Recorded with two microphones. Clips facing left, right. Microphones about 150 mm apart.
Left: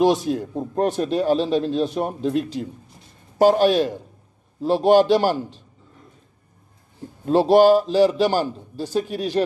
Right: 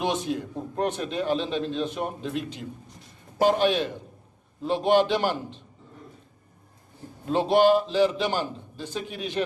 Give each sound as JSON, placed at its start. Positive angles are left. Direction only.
{"t": 0.0, "sound": "a man's voice", "side_deg": 40}
{"t": 7.2, "sound": "a man's voice", "side_deg": 35}